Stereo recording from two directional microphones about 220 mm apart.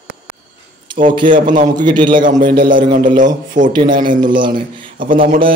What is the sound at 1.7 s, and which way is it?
Speech, 20° right (ahead or behind).